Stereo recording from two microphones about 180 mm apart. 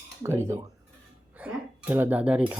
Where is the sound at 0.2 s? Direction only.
15° right (ahead or behind).